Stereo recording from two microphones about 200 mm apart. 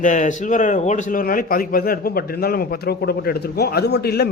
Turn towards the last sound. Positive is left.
turn(degrees=55)  # may be behind; listen again after turning